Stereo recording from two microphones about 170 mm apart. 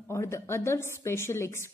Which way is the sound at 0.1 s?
15° left (ahead or behind).